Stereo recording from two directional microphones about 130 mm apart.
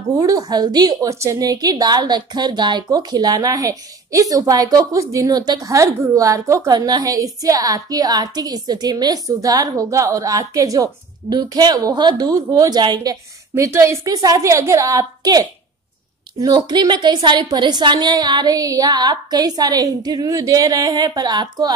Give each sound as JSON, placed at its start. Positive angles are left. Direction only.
{"t": 0.2, "sound": "a woman's voice", "side_deg": -30}